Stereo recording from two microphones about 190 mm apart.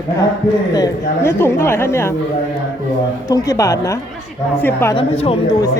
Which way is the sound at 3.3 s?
15° left (ahead or behind).